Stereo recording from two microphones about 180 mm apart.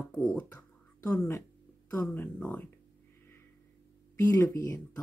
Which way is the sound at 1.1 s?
10° left (ahead or behind).